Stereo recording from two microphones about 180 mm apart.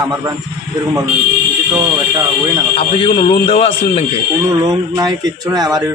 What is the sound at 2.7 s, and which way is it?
A man's voice, 30° left (ahead or behind).